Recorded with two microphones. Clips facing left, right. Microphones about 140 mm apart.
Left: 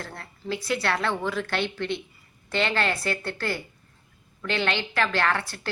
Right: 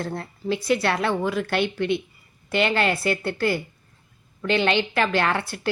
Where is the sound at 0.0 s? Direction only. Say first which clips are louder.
Right 8 dB; 20° right (ahead or behind).